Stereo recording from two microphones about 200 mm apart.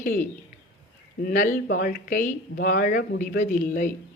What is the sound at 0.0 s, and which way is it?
A man's voice, 40° left (ahead or behind).